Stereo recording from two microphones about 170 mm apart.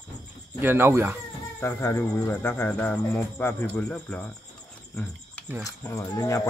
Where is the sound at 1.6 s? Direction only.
15° left (ahead or behind).